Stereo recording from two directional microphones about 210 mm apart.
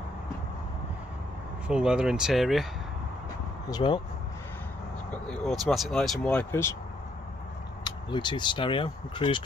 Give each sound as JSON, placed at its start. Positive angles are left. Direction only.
{"t": 1.7, "sound": "speech", "side_deg": -5}
{"t": 3.6, "sound": "speech", "side_deg": 20}
{"t": 5.1, "sound": "speech", "side_deg": 5}
{"t": 7.8, "sound": "speech", "side_deg": 20}